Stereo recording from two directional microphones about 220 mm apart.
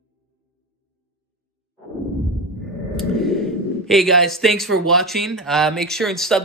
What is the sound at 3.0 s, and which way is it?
Speech, centre (ahead or behind).